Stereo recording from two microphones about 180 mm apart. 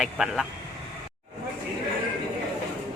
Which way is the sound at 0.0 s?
5° right (ahead or behind).